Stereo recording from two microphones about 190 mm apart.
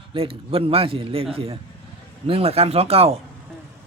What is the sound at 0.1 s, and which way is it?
A man's voice, 30° right (ahead or behind).